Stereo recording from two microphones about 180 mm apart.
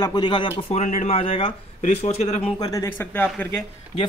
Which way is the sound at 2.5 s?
20° left (ahead or behind).